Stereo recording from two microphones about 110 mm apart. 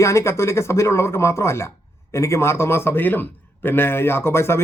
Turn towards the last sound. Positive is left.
turn(degrees=25)  # may be behind; listen again after turning